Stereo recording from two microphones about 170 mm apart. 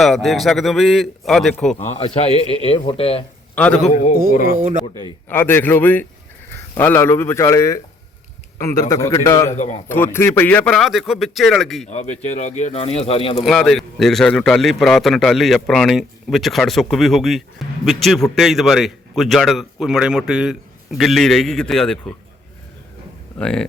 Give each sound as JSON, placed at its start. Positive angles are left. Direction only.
{"t": 0.0, "sound": "a man's voice", "side_deg": 0}
{"t": 1.8, "sound": "speech", "side_deg": 40}
{"t": 3.5, "sound": "a man's voice", "side_deg": 10}
{"t": 4.5, "sound": "speech", "side_deg": -50}
{"t": 5.3, "sound": "a man's voice", "side_deg": 10}
{"t": 9.6, "sound": "a man's voice", "side_deg": 45}
{"t": 9.9, "sound": "a man's voice", "side_deg": 15}
{"t": 11.9, "sound": "speech", "side_deg": 40}
{"t": 13.4, "sound": "a man's voice", "side_deg": 0}
{"t": 23.4, "sound": "a man's voice", "side_deg": 5}